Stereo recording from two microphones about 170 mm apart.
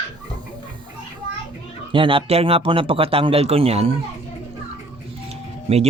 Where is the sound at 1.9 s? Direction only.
30° right (ahead or behind).